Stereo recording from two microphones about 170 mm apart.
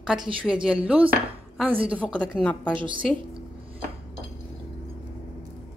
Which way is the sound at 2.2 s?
5° left (ahead or behind).